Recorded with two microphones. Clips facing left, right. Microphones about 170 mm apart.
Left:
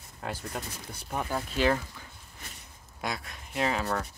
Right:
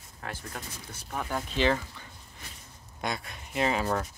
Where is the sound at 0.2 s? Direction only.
10° left (ahead or behind).